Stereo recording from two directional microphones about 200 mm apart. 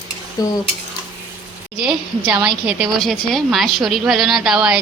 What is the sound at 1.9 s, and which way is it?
A woman's voice, 5° right (ahead or behind).